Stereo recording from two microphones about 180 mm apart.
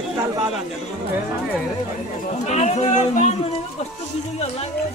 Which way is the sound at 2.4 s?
40° left (ahead or behind).